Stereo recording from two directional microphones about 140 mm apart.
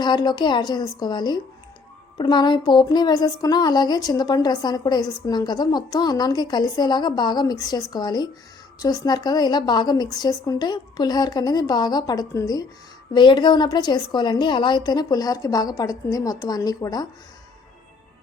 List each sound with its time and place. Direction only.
0.0 s a woman's voice: 30° left (ahead or behind)